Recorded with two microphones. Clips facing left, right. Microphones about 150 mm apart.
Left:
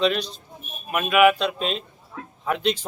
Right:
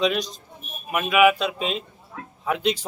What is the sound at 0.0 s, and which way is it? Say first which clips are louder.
A man's voice: left 1 dB; 10° right (ahead or behind).